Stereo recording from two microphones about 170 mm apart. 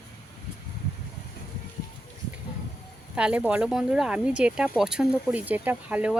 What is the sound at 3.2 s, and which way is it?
Speech, 5° right (ahead or behind).